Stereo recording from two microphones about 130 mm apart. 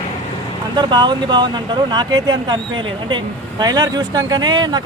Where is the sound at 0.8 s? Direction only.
35° right (ahead or behind).